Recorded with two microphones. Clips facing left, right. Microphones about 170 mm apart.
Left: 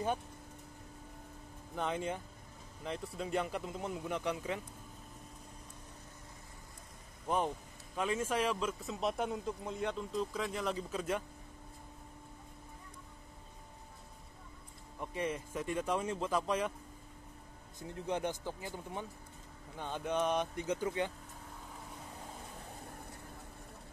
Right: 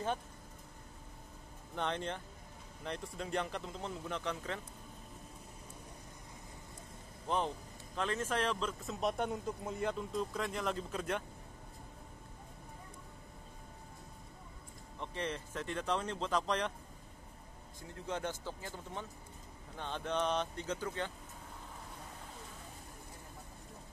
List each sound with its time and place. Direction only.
1.8 s speech: 5° left (ahead or behind)
7.2 s speech: 10° left (ahead or behind)
15.0 s speech: 10° left (ahead or behind)
17.7 s speech: 20° left (ahead or behind)